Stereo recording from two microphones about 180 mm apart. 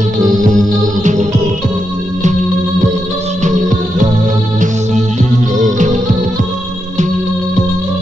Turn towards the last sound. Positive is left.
turn(degrees=-45)  # may be behind; listen again after turning